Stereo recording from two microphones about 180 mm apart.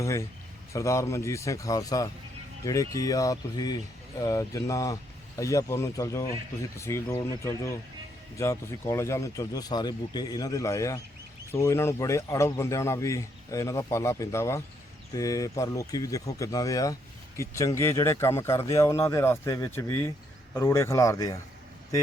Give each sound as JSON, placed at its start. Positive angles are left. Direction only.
{"t": 0.0, "sound": "speech", "side_deg": 15}